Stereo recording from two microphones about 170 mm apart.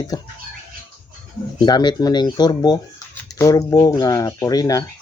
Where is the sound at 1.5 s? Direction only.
25° left (ahead or behind).